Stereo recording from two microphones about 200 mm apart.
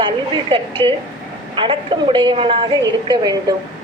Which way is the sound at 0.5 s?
25° right (ahead or behind).